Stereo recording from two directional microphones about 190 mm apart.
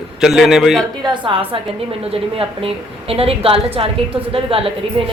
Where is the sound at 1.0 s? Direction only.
25° right (ahead or behind).